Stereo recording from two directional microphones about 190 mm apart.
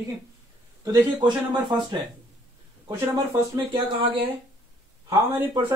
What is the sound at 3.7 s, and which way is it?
Speech, 25° right (ahead or behind).